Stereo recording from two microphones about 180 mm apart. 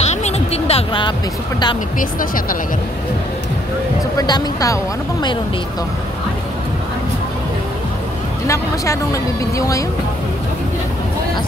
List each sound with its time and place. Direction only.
0.0 s music: 35° left (ahead or behind)
2.0 s speech: 50° left (ahead or behind)
4.2 s speech: 20° left (ahead or behind)
8.5 s speech: 15° left (ahead or behind)